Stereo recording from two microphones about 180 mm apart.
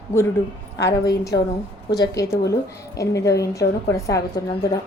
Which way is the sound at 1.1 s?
20° left (ahead or behind).